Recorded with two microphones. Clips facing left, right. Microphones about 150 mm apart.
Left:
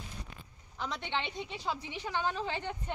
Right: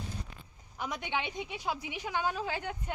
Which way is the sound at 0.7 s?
10° right (ahead or behind).